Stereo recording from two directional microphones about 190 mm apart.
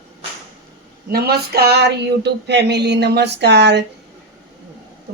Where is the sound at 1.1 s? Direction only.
55° right (ahead or behind).